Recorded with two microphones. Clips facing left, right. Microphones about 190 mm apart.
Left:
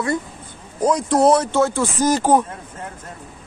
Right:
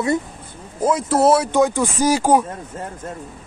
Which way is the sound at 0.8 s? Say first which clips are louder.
Left 1 dB; 5° right (ahead or behind).